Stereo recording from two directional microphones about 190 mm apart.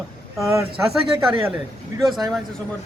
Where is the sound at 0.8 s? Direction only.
15° right (ahead or behind).